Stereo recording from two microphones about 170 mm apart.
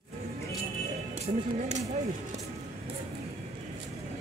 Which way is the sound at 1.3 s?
35° right (ahead or behind).